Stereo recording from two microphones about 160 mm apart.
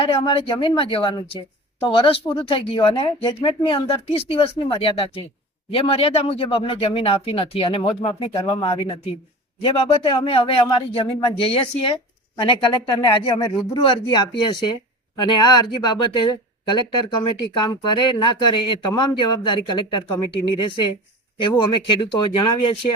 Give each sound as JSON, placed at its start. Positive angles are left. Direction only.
{"t": 0.0, "sound": "speech", "side_deg": 35}